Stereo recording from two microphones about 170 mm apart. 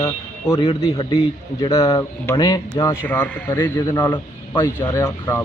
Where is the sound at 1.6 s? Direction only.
20° left (ahead or behind).